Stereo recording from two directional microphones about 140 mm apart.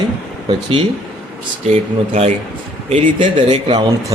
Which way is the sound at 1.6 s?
50° right (ahead or behind).